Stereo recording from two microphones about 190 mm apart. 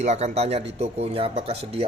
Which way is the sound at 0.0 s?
35° right (ahead or behind).